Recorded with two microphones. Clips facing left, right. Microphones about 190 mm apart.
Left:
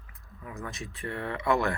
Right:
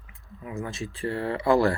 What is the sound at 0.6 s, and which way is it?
Speech, 30° right (ahead or behind).